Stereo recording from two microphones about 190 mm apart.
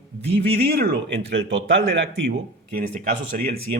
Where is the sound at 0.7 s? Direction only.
55° right (ahead or behind); by 1.8 s 75° right (ahead or behind).